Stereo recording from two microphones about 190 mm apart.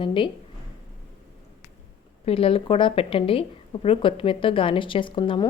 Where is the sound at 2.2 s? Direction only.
30° left (ahead or behind).